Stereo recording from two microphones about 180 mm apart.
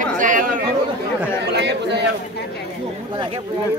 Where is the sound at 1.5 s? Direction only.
70° right (ahead or behind).